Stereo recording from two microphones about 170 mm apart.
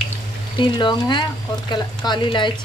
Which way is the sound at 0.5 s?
30° left (ahead or behind).